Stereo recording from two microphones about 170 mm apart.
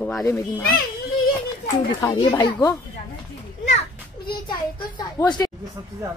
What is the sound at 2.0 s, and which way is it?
Speech, 20° left (ahead or behind).